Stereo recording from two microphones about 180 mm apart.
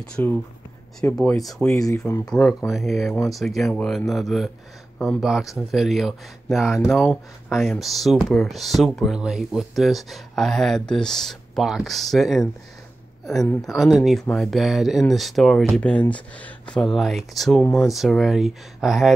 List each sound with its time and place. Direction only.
0.2 s speech: 10° left (ahead or behind)
1.8 s speech: 15° left (ahead or behind)
2.2 s speech: centre (ahead or behind)